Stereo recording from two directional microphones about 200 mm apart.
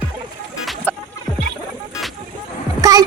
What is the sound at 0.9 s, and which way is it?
Music, 10° left (ahead or behind).